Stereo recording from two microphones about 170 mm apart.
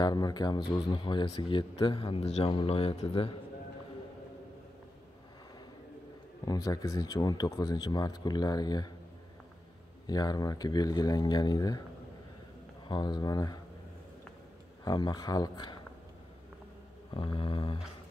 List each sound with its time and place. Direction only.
0.0 s speech: 25° left (ahead or behind)
6.4 s speech: 20° left (ahead or behind)
10.0 s speech: 25° left (ahead or behind)
12.8 s speech: 25° left (ahead or behind)
14.9 s speech: 25° left (ahead or behind)
17.1 s mantra: 30° left (ahead or behind)